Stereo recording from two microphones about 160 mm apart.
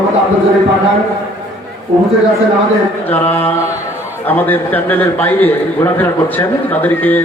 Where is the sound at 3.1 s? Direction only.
10° left (ahead or behind).